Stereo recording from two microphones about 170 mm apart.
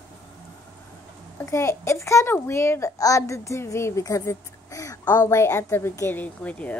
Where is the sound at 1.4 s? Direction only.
15° left (ahead or behind).